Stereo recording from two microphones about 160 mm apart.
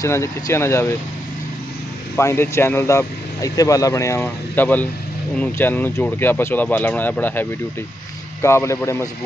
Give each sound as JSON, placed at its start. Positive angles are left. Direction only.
{"t": 0.0, "sound": "speech", "side_deg": 15}
{"t": 2.1, "sound": "speech", "side_deg": 15}